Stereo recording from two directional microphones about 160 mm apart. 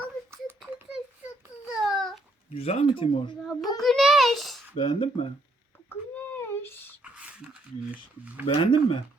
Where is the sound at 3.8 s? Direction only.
Centre (ahead or behind).